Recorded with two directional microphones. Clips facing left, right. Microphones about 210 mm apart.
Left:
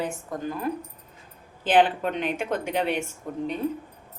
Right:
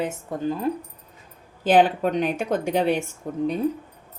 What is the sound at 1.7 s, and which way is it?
A woman's voice, 40° right (ahead or behind).